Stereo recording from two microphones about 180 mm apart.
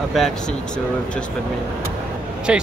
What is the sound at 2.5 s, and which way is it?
Speech, 5° right (ahead or behind).